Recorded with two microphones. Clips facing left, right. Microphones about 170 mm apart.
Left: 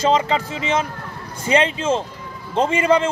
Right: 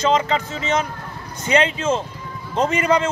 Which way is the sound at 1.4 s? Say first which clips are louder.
Even; 30° left (ahead or behind).